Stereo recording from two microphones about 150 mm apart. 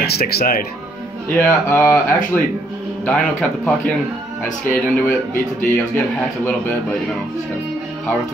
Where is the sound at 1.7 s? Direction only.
15° left (ahead or behind).